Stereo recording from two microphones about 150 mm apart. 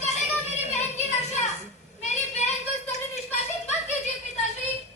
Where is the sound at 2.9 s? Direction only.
50° left (ahead or behind).